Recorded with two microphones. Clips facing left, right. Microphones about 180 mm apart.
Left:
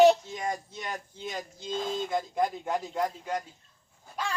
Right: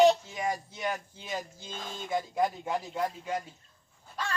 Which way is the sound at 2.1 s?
5° right (ahead or behind).